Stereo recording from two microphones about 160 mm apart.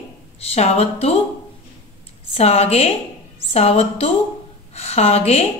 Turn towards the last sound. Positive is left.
turn(degrees=40)  # may be behind; listen again after turning